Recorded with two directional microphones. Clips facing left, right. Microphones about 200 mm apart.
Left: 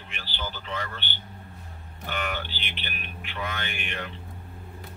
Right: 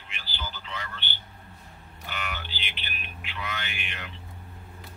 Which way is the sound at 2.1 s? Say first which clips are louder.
Left 5 dB; 50° left (ahead or behind).